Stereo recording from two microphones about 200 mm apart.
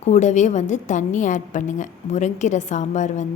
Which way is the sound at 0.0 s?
35° left (ahead or behind).